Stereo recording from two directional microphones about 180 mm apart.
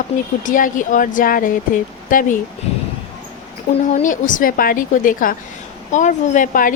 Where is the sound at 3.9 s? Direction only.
45° left (ahead or behind).